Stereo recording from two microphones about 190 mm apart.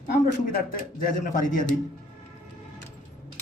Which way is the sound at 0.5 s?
50° left (ahead or behind).